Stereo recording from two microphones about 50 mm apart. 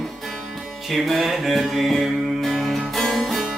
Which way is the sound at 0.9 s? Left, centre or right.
Centre.